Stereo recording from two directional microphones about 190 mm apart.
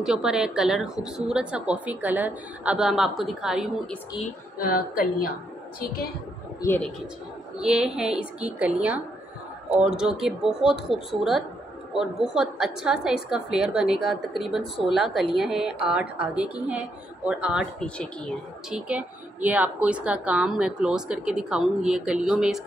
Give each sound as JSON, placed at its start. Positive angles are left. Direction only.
{"t": 0.0, "sound": "a woman's voice", "side_deg": -5}
{"t": 4.6, "sound": "a woman's voice", "side_deg": 50}
{"t": 6.6, "sound": "speech", "side_deg": 15}
{"t": 7.5, "sound": "a woman's voice", "side_deg": -5}
{"t": 17.8, "sound": "a woman's voice", "side_deg": 5}
{"t": 18.7, "sound": "a woman's voice", "side_deg": -5}